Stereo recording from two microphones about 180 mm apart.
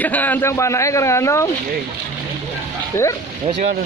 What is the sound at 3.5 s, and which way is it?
Speech, 40° right (ahead or behind).